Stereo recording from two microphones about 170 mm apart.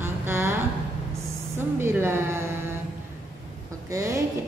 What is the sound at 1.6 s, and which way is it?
Speech, 15° right (ahead or behind).